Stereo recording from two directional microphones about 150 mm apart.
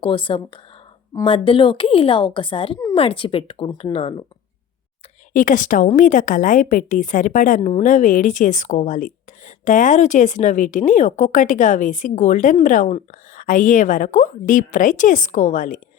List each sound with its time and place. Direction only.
0.0 s a woman's voice: 35° left (ahead or behind)
5.3 s a woman's voice: 60° left (ahead or behind)
7.6 s a woman's voice: 50° left (ahead or behind)